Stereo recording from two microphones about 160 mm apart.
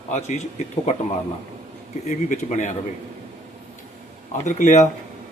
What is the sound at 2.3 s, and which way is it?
Speech, 50° left (ahead or behind).